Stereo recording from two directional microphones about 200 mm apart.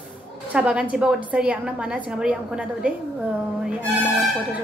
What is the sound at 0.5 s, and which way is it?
A woman's voice, 5° right (ahead or behind).